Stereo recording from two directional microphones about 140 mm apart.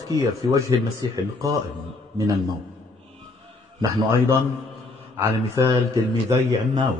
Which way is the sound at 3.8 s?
20° right (ahead or behind).